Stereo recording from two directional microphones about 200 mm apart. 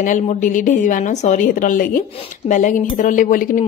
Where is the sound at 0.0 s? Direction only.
40° left (ahead or behind).